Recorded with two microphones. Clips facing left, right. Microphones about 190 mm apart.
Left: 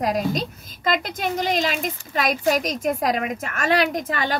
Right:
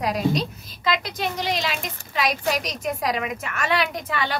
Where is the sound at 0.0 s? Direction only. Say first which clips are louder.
Even; 45° left (ahead or behind).